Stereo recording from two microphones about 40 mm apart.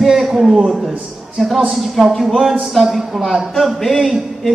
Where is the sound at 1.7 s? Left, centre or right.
Centre.